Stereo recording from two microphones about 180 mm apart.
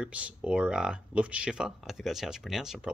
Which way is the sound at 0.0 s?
5° right (ahead or behind).